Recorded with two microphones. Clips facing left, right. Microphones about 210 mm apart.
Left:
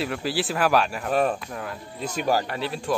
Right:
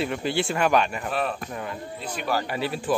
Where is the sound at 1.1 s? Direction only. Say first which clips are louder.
Left 5 dB; 45° left (ahead or behind).